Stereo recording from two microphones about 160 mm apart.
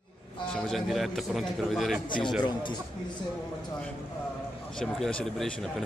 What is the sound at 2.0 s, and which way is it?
Speech, 30° left (ahead or behind).